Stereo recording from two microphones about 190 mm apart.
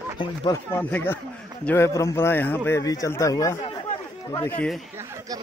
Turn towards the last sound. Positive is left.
turn(degrees=20)  # may be behind; listen again after turning